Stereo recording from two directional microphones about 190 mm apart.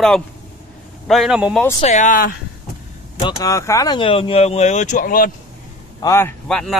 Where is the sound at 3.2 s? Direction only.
20° left (ahead or behind); by 5.3 s 45° left (ahead or behind).